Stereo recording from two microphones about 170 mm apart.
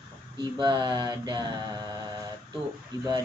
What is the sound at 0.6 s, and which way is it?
Speech, 25° right (ahead or behind).